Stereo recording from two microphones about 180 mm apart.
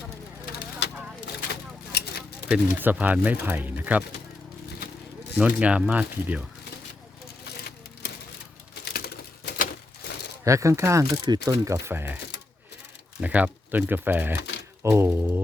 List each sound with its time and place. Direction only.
1.9 s a sound: 60° left (ahead or behind)
2.5 s speech: 10° right (ahead or behind)
5.3 s speech: 5° right (ahead or behind)
8.0 s a sound: 75° left (ahead or behind)
8.8 s typewriter: 60° left (ahead or behind)
10.4 s speech: 15° right (ahead or behind)
13.2 s speech: 10° right (ahead or behind)